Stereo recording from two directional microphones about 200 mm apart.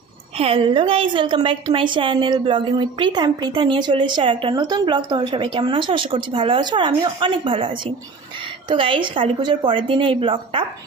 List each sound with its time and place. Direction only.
0.3 s a woman's voice: 30° right (ahead or behind)